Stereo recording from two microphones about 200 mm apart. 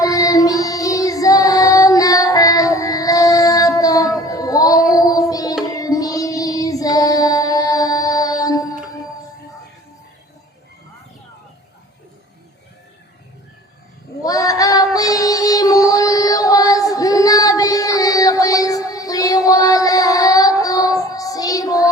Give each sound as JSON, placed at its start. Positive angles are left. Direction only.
{"t": 0.0, "sound": "child singing", "side_deg": 15}
{"t": 14.2, "sound": "synthetic singing", "side_deg": 15}